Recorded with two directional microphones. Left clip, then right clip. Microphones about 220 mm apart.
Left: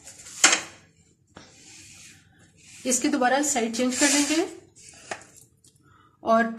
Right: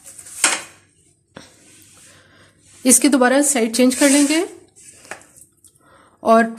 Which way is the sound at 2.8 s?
45° right (ahead or behind).